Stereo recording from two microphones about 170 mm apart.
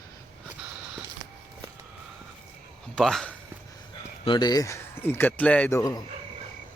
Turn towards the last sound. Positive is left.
turn(degrees=20)  # may be behind; listen again after turning